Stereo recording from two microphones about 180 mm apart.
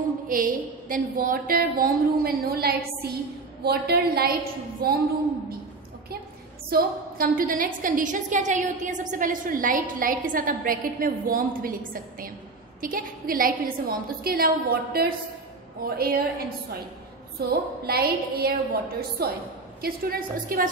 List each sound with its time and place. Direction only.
0.3 s a woman's voice: 50° right (ahead or behind)
6.7 s a woman's voice: 55° right (ahead or behind)